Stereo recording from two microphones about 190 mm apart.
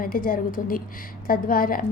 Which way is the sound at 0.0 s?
50° left (ahead or behind).